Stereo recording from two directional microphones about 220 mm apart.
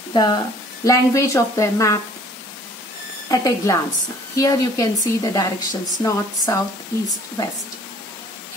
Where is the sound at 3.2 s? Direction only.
15° left (ahead or behind).